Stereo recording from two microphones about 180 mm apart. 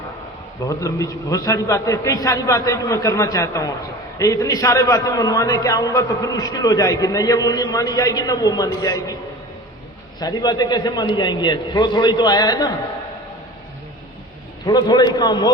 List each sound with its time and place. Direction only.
0.6 s a man's voice: 20° left (ahead or behind)
10.2 s a man's voice: 20° left (ahead or behind)
14.6 s a man's voice: 20° left (ahead or behind)